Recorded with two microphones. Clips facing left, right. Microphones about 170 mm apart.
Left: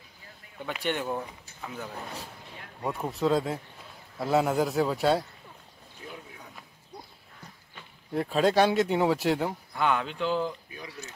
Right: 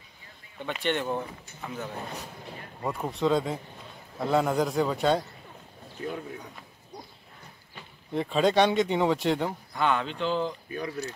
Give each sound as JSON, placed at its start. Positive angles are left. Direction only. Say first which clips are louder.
{"t": 0.6, "sound": "speech", "louder": "right 2 dB", "side_deg": 10}
{"t": 2.8, "sound": "speech", "louder": "even", "side_deg": 0}
{"t": 5.9, "sound": "speech", "louder": "right 9 dB", "side_deg": -60}
{"t": 8.1, "sound": "speech", "louder": "even", "side_deg": 5}